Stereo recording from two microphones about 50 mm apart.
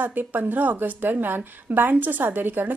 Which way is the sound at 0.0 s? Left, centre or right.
Right.